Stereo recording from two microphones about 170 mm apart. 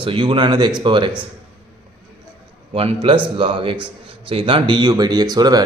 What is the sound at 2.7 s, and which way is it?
A man's voice, 35° right (ahead or behind).